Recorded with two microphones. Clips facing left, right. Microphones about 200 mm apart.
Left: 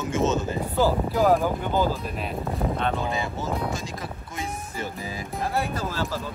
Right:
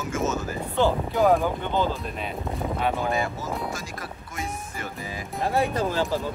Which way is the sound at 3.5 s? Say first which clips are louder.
Left 2 dB; centre (ahead or behind).